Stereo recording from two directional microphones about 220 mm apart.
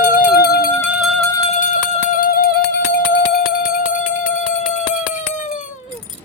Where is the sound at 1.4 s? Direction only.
35° left (ahead or behind).